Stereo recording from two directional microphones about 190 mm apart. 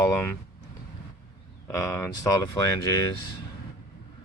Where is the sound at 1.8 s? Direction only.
15° left (ahead or behind).